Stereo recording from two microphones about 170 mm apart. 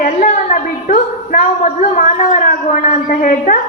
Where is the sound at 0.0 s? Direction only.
50° left (ahead or behind).